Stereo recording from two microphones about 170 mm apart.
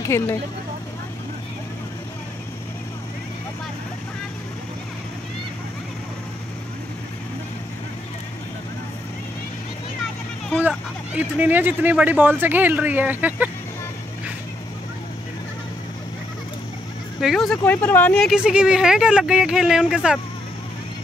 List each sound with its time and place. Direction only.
0.0 s speech: 15° left (ahead or behind)
10.6 s speech: 10° right (ahead or behind)
17.2 s speech: centre (ahead or behind)